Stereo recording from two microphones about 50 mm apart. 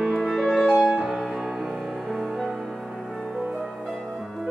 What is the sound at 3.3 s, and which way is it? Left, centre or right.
Music, centre.